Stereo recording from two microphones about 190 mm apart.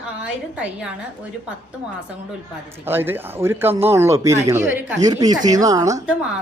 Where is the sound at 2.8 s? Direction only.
10° right (ahead or behind).